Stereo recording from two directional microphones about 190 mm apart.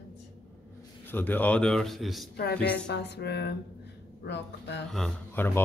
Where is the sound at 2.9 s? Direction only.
65° left (ahead or behind).